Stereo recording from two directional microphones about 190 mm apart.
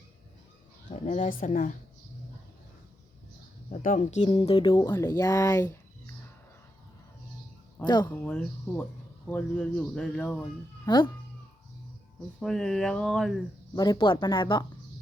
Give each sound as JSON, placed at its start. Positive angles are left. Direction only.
{"t": 0.9, "sound": "a woman's voice", "side_deg": 40}
{"t": 3.7, "sound": "speech", "side_deg": 40}
{"t": 4.7, "sound": "speech", "side_deg": 15}
{"t": 7.9, "sound": "speech", "side_deg": 25}
{"t": 8.2, "sound": "speech", "side_deg": 5}
{"t": 10.8, "sound": "speech", "side_deg": 25}
{"t": 12.4, "sound": "speech", "side_deg": 0}
{"t": 13.7, "sound": "speech", "side_deg": 20}